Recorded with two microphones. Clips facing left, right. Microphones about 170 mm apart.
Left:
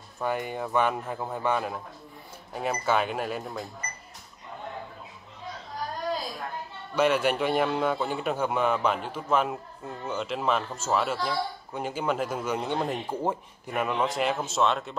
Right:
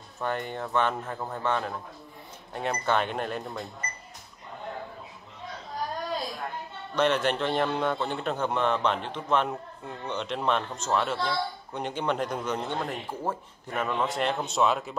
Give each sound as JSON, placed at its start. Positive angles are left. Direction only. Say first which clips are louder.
{"t": 0.2, "sound": "a man's voice", "louder": "left 2 dB", "side_deg": 5}
{"t": 7.0, "sound": "a man's voice", "louder": "left 1 dB", "side_deg": 10}
{"t": 14.0, "sound": "a man's voice", "louder": "left 1 dB", "side_deg": 0}